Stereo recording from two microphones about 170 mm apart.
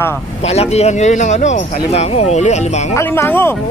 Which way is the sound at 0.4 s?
40° left (ahead or behind).